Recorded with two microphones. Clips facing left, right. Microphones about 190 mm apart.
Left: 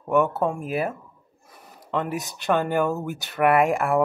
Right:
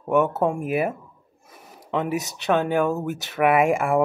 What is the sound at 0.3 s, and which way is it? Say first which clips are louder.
Speech: right 3 dB; 15° right (ahead or behind).